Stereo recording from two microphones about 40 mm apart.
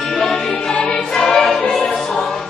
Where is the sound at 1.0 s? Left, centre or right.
Centre.